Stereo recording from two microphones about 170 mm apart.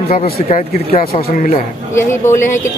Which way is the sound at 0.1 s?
50° left (ahead or behind).